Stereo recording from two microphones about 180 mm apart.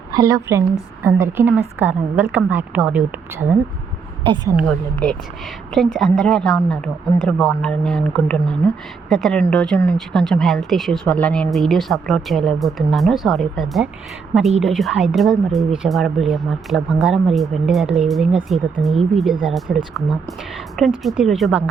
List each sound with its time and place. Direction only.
0.1 s a woman's voice: 20° right (ahead or behind)
4.2 s speech: 25° right (ahead or behind)
4.5 s a woman's voice: 5° left (ahead or behind)
19.3 s speech: 25° right (ahead or behind)
19.5 s a woman's voice: centre (ahead or behind)